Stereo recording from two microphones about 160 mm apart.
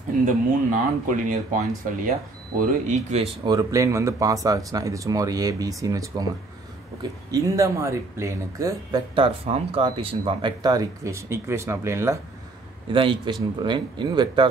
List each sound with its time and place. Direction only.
0.7 s speech: 55° right (ahead or behind)
3.4 s speech: 20° right (ahead or behind)
9.1 s speech: 35° right (ahead or behind); by 12.2 s 15° right (ahead or behind)
12.9 s speech: 30° right (ahead or behind)